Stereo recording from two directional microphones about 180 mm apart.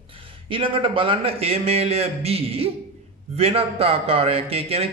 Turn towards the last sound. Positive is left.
turn(degrees=-35)  # may be behind; listen again after turning